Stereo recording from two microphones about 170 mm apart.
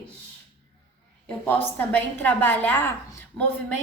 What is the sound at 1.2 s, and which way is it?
A woman's voice, 10° left (ahead or behind).